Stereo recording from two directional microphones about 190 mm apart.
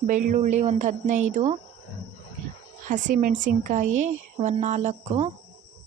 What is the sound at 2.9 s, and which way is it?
Speech, 40° right (ahead or behind).